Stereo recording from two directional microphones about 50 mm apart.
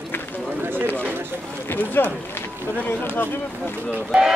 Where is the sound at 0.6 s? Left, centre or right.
Right.